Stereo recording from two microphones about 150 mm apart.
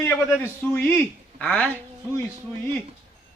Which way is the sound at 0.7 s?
10° left (ahead or behind).